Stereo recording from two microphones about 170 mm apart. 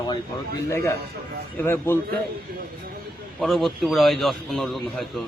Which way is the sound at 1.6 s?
15° left (ahead or behind).